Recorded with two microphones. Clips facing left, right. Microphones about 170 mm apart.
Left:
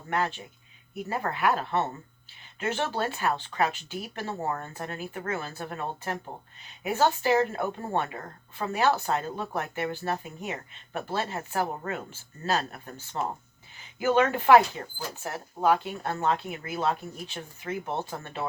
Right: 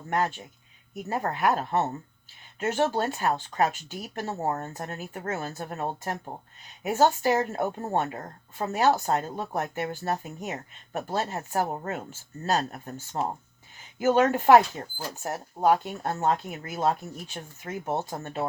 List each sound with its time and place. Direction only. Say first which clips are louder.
0.1 s speech: right 2 dB; 40° right (ahead or behind)